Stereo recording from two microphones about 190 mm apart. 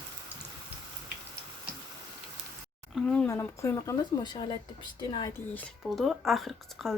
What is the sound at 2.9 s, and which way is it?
Speech, 5° left (ahead or behind).